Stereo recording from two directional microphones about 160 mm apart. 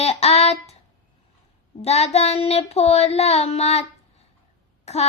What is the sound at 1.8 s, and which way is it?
Child singing, 40° left (ahead or behind).